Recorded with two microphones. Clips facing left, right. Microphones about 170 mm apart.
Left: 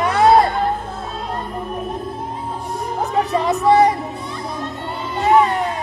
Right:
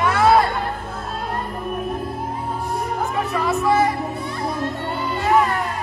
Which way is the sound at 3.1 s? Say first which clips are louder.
Left 5 dB; 35° left (ahead or behind).